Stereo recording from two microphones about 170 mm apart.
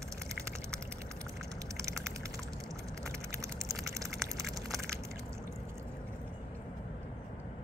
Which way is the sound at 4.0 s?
20° right (ahead or behind).